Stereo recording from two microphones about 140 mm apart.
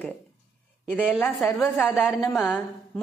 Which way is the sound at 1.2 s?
15° left (ahead or behind).